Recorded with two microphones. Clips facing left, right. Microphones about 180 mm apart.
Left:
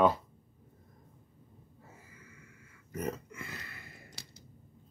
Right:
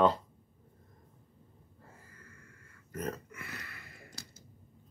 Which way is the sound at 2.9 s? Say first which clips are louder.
Left 1 dB; 10° left (ahead or behind).